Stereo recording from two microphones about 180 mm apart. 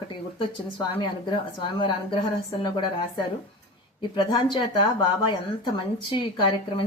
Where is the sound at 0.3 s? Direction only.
25° left (ahead or behind).